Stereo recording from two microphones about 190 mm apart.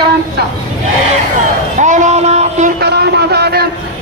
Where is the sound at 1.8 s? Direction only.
40° right (ahead or behind).